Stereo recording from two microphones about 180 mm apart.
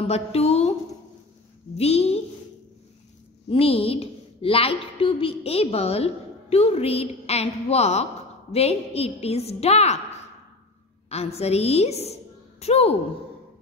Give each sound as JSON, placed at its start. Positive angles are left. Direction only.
{"t": 0.0, "sound": "a sound", "side_deg": 35}
{"t": 1.8, "sound": "a woman's voice", "side_deg": 35}
{"t": 3.4, "sound": "a woman's voice", "side_deg": 30}
{"t": 11.1, "sound": "a woman's voice", "side_deg": 35}